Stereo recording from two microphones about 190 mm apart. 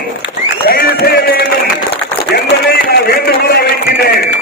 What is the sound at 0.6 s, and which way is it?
Music, 55° left (ahead or behind).